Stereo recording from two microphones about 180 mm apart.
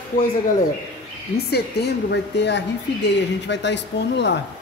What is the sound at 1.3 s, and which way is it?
A woman's voice, 65° left (ahead or behind).